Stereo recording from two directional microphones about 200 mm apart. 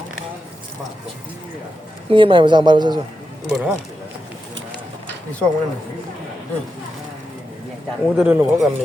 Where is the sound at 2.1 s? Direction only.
25° right (ahead or behind).